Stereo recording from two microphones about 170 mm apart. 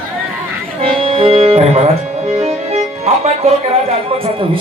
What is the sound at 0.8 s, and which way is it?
Speech, 30° right (ahead or behind).